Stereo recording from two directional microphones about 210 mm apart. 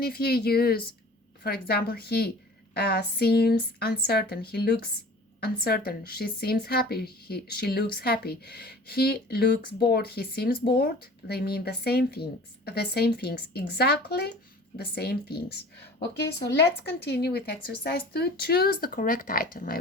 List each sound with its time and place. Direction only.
0.0 s speech: 45° left (ahead or behind)
17.0 s speech: 50° left (ahead or behind)